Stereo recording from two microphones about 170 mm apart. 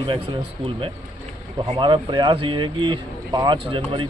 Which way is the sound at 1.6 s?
35° right (ahead or behind).